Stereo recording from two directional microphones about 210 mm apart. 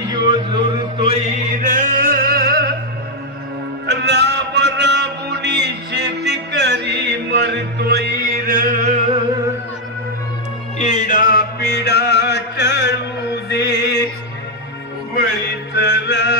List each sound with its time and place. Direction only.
0.1 s music: 20° right (ahead or behind)
1.6 s music: 40° right (ahead or behind)
3.8 s music: 55° right (ahead or behind); by 9.2 s 35° right (ahead or behind)
10.8 s music: 35° left (ahead or behind); by 14.0 s 55° left (ahead or behind)
15.7 s music: 55° left (ahead or behind)